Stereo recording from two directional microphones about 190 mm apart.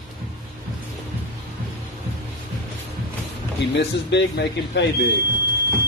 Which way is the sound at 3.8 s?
65° left (ahead or behind).